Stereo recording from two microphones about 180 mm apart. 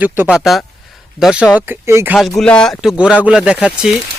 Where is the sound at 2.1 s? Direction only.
Centre (ahead or behind).